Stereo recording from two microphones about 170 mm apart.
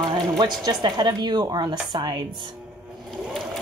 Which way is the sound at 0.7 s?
25° right (ahead or behind).